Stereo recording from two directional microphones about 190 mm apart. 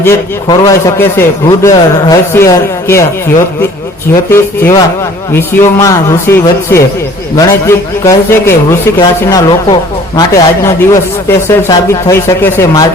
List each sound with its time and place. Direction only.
0.0 s a man's voice: 15° left (ahead or behind)
4.3 s a man's voice: 10° left (ahead or behind)